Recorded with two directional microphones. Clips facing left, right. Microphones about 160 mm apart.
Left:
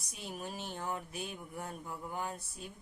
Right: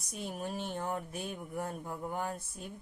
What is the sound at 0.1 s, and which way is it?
A woman's voice, 50° right (ahead or behind).